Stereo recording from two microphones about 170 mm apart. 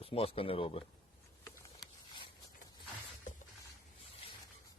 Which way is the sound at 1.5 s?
25° left (ahead or behind).